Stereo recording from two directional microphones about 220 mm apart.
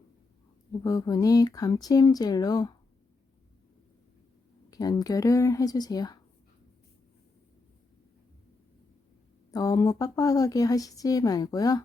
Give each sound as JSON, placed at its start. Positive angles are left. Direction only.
{"t": 0.7, "sound": "speech", "side_deg": 15}
{"t": 4.7, "sound": "speech", "side_deg": 15}
{"t": 9.5, "sound": "speech", "side_deg": 15}